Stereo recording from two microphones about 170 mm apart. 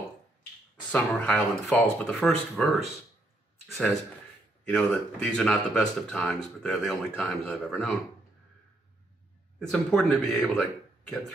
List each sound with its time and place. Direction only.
0.9 s speech: 5° left (ahead or behind)
9.6 s speech: 5° left (ahead or behind)